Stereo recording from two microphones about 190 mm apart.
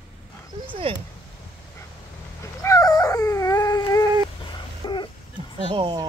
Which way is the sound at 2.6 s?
15° left (ahead or behind).